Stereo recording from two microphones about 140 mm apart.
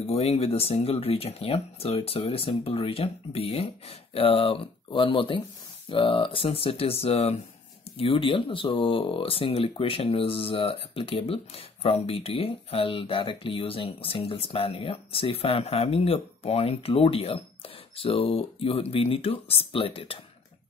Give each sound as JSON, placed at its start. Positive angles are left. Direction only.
{"t": 0.0, "sound": "speech", "side_deg": 45}